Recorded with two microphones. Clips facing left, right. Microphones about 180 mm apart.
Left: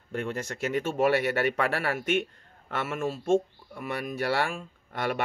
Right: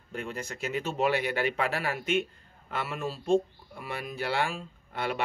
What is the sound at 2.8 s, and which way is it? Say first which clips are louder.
Speech: left 4 dB; 50° left (ahead or behind).